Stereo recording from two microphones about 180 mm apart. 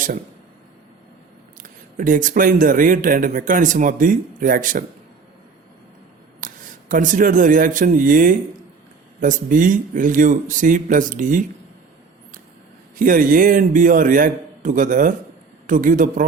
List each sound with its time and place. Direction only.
2.0 s speech: 50° right (ahead or behind)
6.4 s speech: 45° right (ahead or behind)
13.0 s speech: 50° right (ahead or behind)